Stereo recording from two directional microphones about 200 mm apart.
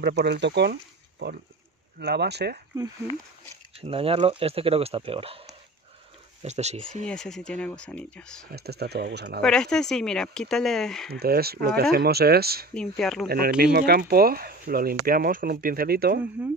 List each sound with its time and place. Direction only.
0.0 s speech: 55° right (ahead or behind)
2.0 s speech: 55° right (ahead or behind)
3.7 s speech: 30° right (ahead or behind)
7.1 s speech: 5° left (ahead or behind)
8.5 s speech: 50° right (ahead or behind)
9.4 s speech: 5° left (ahead or behind)
11.1 s speech: 50° right (ahead or behind)
12.7 s speech: centre (ahead or behind)
13.6 s speech: 50° right (ahead or behind)